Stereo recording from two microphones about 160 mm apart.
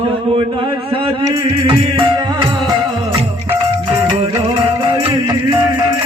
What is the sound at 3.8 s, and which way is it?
Music, 30° right (ahead or behind).